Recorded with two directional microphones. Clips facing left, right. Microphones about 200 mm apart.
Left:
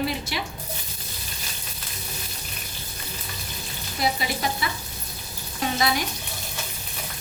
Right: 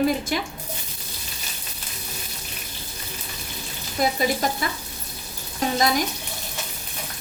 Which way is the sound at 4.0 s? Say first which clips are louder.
Right 4 dB; 45° right (ahead or behind).